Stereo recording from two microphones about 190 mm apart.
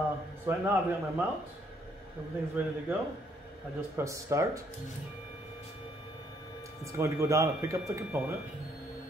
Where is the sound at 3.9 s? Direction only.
15° right (ahead or behind).